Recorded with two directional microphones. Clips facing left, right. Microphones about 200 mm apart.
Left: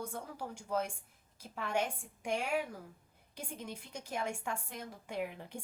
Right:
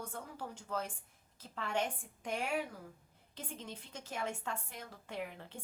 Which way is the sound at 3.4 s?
10° left (ahead or behind).